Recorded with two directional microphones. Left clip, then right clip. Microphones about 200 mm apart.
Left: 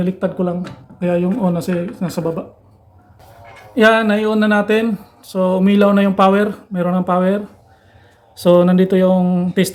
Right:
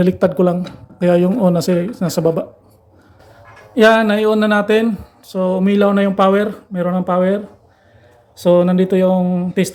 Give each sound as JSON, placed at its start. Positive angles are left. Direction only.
{"t": 0.0, "sound": "speech", "side_deg": -25}
{"t": 3.8, "sound": "speech", "side_deg": -10}